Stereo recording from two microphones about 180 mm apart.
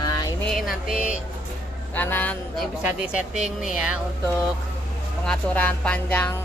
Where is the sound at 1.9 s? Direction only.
10° left (ahead or behind).